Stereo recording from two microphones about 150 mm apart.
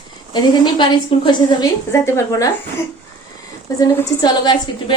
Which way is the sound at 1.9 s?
20° left (ahead or behind).